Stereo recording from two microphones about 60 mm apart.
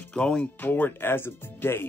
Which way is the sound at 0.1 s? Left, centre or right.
Centre.